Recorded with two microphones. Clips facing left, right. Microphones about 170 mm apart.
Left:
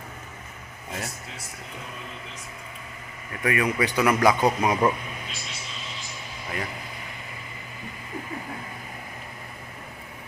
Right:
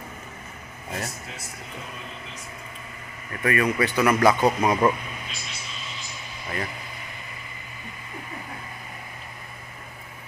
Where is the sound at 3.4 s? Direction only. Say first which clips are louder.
Right 1 dB; 15° left (ahead or behind).